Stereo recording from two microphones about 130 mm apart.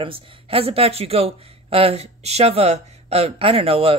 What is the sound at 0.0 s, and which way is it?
Speech, 45° right (ahead or behind).